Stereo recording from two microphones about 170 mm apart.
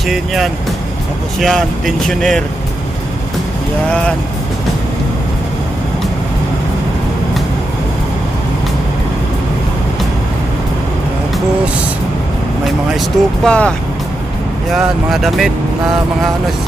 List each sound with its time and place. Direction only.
0.1 s speech: centre (ahead or behind)
12.6 s speech: centre (ahead or behind)